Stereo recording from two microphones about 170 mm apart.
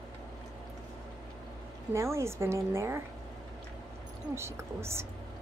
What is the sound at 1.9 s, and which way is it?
A woman's voice, 15° right (ahead or behind).